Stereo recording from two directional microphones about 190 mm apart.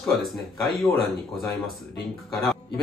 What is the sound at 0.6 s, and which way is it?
Speech, centre (ahead or behind).